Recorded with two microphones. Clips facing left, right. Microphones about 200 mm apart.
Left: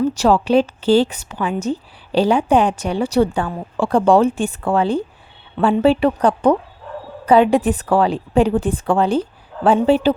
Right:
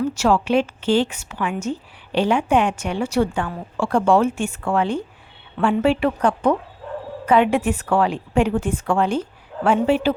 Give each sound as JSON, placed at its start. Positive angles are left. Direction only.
{"t": 0.1, "sound": "a woman's voice", "side_deg": 35}